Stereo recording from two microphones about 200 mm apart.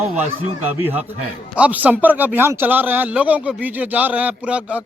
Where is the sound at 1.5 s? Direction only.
5° right (ahead or behind).